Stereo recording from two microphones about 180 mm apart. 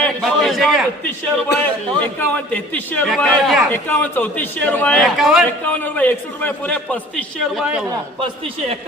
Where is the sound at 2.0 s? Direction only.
10° left (ahead or behind).